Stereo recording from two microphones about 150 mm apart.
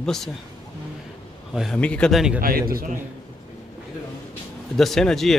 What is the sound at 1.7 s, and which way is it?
Speech, 10° left (ahead or behind).